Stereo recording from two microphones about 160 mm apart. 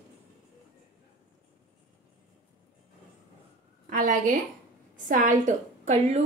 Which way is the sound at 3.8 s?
55° right (ahead or behind).